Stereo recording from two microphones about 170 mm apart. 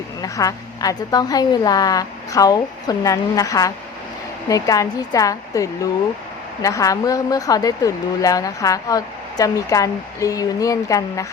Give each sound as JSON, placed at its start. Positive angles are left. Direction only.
{"t": 0.2, "sound": "a woman's voice", "side_deg": 20}